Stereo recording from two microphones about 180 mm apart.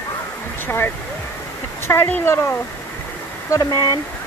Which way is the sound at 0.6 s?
10° left (ahead or behind).